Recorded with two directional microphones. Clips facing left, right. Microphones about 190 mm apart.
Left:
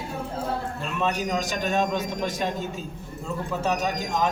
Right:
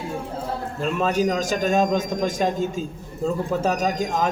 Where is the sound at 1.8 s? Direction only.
45° right (ahead or behind).